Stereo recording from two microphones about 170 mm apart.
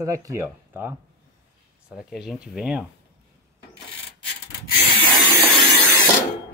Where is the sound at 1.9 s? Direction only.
Centre (ahead or behind).